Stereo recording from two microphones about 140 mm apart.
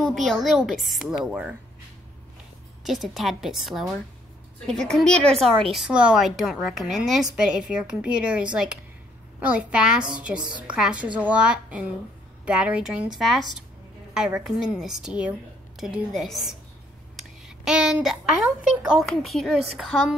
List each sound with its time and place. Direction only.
0.0 s a woman's voice: centre (ahead or behind)
2.8 s a woman's voice: centre (ahead or behind)